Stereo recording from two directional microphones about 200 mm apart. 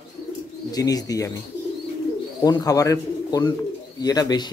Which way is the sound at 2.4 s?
20° left (ahead or behind).